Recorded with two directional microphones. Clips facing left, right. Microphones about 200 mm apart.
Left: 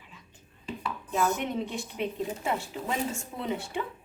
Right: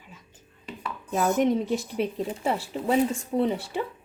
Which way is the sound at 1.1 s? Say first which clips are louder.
Right 6 dB; 40° right (ahead or behind).